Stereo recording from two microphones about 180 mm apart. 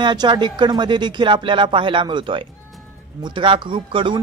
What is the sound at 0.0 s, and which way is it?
Speech, 25° right (ahead or behind).